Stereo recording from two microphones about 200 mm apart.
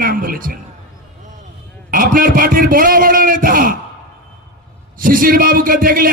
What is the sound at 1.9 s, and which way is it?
A man's voice, 45° right (ahead or behind).